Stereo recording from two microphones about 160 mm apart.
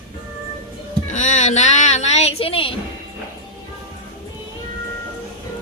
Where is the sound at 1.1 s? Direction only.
50° left (ahead or behind); by 2.7 s 35° left (ahead or behind).